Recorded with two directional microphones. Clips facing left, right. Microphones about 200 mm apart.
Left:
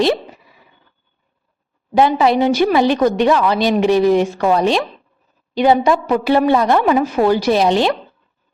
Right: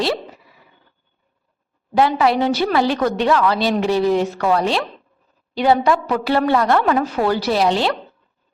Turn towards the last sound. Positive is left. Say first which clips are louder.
# left 3 dB
turn(degrees=20)  # may be behind; listen again after turning